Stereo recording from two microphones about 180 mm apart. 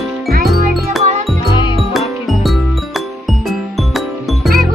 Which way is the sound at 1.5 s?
25° left (ahead or behind).